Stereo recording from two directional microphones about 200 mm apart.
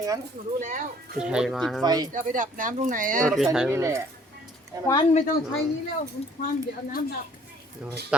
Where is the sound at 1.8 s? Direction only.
20° right (ahead or behind).